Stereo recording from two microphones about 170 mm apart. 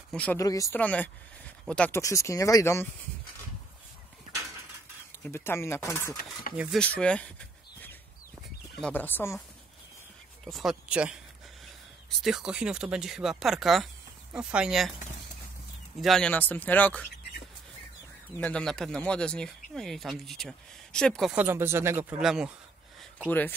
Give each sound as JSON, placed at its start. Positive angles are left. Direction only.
{"t": 0.1, "sound": "speech", "side_deg": 5}
{"t": 0.4, "sound": "speech", "side_deg": 20}
{"t": 0.7, "sound": "speech", "side_deg": 10}
{"t": 2.0, "sound": "speech", "side_deg": 20}
{"t": 5.2, "sound": "speech", "side_deg": 15}
{"t": 6.5, "sound": "speech", "side_deg": -5}
{"t": 7.0, "sound": "a sound", "side_deg": 5}
{"t": 8.8, "sound": "speech", "side_deg": 10}
{"t": 10.4, "sound": "speech", "side_deg": 0}
{"t": 12.2, "sound": "speech", "side_deg": 0}
{"t": 16.0, "sound": "speech", "side_deg": 5}
{"t": 18.3, "sound": "speech", "side_deg": 5}
{"t": 21.3, "sound": "speech", "side_deg": -10}
{"t": 22.2, "sound": "speech", "side_deg": -5}